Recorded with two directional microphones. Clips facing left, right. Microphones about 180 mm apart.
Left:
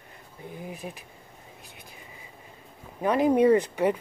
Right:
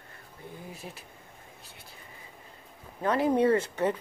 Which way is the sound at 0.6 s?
15° left (ahead or behind).